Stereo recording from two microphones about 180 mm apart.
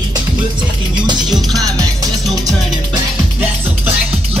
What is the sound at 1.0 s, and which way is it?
Music, 25° right (ahead or behind).